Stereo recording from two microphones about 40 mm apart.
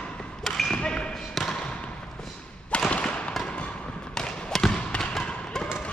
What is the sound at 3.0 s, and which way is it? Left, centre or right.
Fireworks, left.